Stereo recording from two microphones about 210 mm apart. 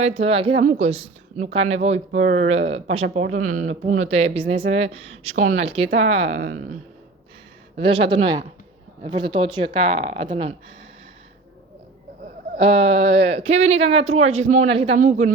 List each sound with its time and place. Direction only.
0.0 s speech: 30° right (ahead or behind)
0.6 s speech: 40° right (ahead or behind)
0.9 s a woman's voice: 30° right (ahead or behind)
6.4 s speech: 40° right (ahead or behind)
7.8 s speech: 25° right (ahead or behind)
12.5 s speech: 25° right (ahead or behind)